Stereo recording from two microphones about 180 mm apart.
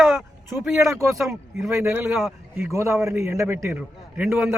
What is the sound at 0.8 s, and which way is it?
A man's voice, 15° right (ahead or behind).